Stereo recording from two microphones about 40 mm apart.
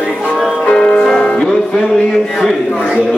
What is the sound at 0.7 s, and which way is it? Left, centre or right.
Music, centre.